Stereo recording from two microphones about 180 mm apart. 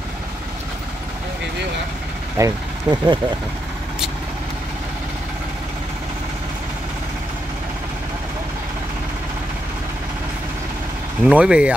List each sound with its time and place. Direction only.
2.3 s speech: 20° right (ahead or behind)
11.2 s speech: 5° right (ahead or behind)